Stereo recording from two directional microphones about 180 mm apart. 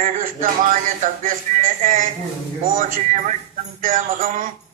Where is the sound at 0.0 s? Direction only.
45° right (ahead or behind).